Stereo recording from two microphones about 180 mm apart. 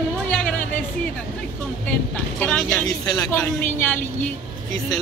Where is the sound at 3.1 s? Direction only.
20° left (ahead or behind).